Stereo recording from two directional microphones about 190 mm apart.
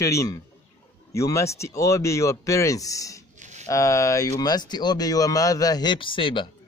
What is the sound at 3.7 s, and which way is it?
Speech, 15° left (ahead or behind).